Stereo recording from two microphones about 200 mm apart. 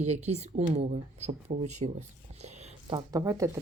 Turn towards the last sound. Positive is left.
turn(degrees=-15)  # may be behind; listen again after turning